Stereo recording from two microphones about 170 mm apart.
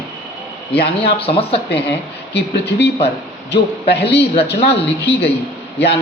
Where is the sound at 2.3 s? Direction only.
85° left.